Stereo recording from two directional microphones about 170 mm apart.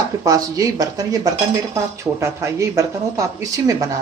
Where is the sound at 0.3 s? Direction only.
20° right (ahead or behind).